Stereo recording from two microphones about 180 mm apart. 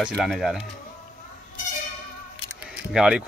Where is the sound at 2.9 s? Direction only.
5° right (ahead or behind).